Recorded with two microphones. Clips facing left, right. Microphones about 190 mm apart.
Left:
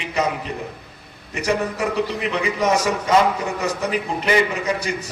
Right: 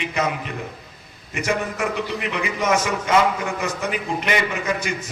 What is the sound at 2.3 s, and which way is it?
A man's voice, 35° left (ahead or behind).